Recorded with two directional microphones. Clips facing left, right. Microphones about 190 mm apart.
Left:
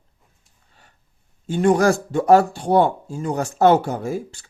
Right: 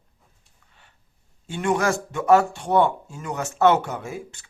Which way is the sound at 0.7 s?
40° left (ahead or behind).